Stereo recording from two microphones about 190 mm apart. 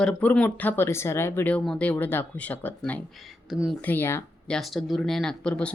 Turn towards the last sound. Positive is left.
turn(degrees=5)  # may be behind; listen again after turning